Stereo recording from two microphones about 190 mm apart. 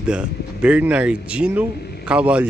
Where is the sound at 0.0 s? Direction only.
5° right (ahead or behind).